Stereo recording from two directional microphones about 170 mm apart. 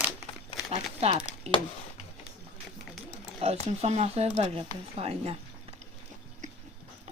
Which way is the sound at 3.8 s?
35° right (ahead or behind).